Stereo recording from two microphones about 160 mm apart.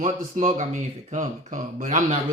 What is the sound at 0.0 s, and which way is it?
Speech, 50° right (ahead or behind).